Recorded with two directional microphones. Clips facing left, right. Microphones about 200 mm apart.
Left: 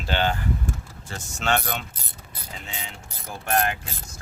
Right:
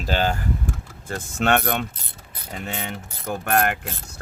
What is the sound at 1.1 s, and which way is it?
Mechanisms, 55° right (ahead or behind).